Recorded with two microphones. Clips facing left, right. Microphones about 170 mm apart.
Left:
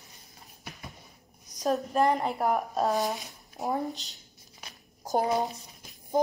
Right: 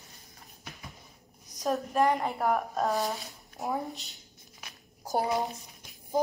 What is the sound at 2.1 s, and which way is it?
Speech, centre (ahead or behind).